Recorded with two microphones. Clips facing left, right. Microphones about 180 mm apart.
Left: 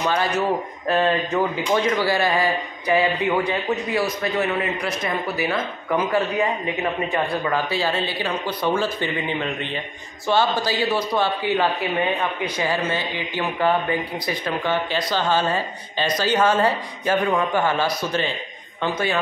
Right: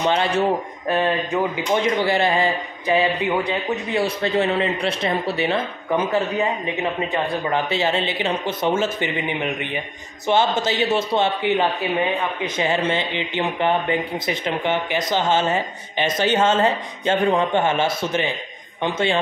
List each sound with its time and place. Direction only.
0.0 s speech: 25° right (ahead or behind)
0.8 s speech: 15° right (ahead or behind)